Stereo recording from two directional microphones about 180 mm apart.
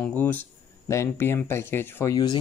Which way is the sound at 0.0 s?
10° left (ahead or behind).